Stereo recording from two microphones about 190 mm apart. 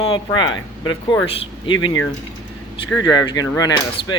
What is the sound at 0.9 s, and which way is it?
Speech, 25° left (ahead or behind).